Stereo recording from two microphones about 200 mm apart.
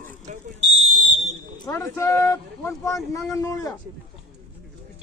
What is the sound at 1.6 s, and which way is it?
Speech, 15° left (ahead or behind).